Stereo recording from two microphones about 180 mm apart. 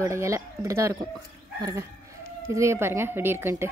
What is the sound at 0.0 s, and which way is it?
A woman's voice, 15° right (ahead or behind).